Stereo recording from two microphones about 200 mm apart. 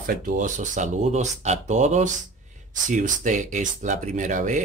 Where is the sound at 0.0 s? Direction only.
45° right (ahead or behind).